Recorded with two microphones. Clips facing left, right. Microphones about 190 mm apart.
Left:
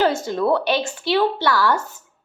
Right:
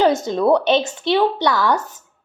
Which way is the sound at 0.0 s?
20° right (ahead or behind).